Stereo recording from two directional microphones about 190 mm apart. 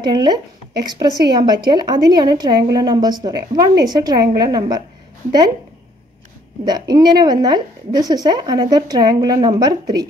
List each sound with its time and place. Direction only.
0.0 s a woman's voice: 20° right (ahead or behind)
6.6 s a woman's voice: 20° right (ahead or behind)